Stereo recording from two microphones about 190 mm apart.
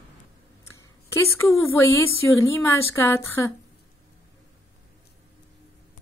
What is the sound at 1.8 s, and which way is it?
Speech, 15° left (ahead or behind).